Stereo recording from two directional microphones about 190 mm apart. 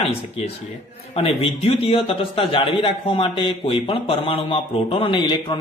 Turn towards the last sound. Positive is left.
turn(degrees=25)  # may be behind; listen again after turning